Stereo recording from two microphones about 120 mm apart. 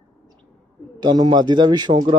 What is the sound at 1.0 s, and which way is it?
Speech, 35° right (ahead or behind).